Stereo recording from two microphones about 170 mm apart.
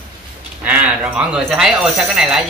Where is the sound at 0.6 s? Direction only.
10° right (ahead or behind).